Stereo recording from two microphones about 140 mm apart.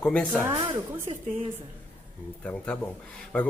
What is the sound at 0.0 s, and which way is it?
Speech, 10° left (ahead or behind).